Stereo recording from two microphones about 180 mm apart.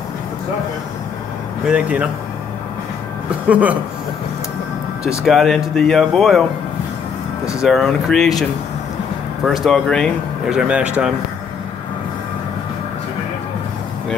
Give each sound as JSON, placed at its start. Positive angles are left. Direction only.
{"t": 1.7, "sound": "speech", "side_deg": -5}
{"t": 3.3, "sound": "speech", "side_deg": -5}
{"t": 5.2, "sound": "speech", "side_deg": 0}
{"t": 7.6, "sound": "speech", "side_deg": 0}
{"t": 9.7, "sound": "speech", "side_deg": 5}